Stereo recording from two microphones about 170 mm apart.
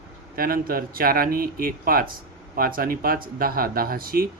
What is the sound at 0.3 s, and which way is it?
Speech, 60° right (ahead or behind).